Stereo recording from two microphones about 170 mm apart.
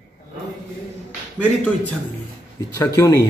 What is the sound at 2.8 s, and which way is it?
Speech, 20° left (ahead or behind).